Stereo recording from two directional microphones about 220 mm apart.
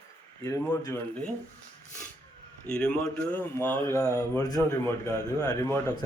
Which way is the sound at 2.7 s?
5° left (ahead or behind).